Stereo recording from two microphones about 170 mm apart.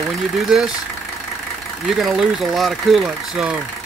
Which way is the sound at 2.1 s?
Centre (ahead or behind).